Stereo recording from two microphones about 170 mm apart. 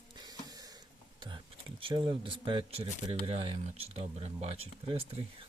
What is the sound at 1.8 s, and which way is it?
Speech, 30° right (ahead or behind).